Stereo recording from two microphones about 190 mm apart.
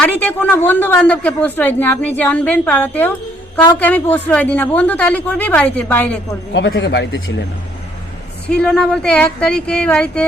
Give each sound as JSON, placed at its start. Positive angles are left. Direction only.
{"t": 0.0, "sound": "speech", "side_deg": 10}
{"t": 6.5, "sound": "speech", "side_deg": 75}
{"t": 8.4, "sound": "speech", "side_deg": 5}